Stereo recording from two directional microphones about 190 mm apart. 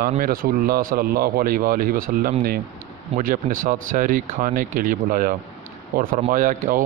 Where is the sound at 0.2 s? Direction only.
50° right (ahead or behind).